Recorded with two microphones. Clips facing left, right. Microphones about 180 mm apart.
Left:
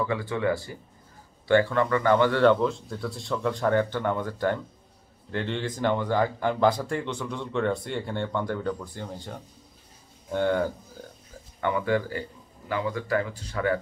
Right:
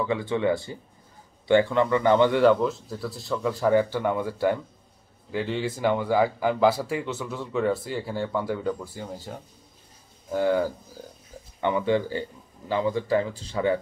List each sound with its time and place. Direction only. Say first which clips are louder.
0.0 s speech: right 2 dB; 20° right (ahead or behind)
2.4 s a man's voice: right 1 dB; 5° right (ahead or behind)
11.6 s speech: right 2 dB; 20° right (ahead or behind)